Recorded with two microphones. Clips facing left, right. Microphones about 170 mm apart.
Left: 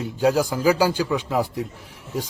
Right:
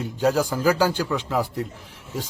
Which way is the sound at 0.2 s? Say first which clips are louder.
Left 1 dB; 10° left (ahead or behind).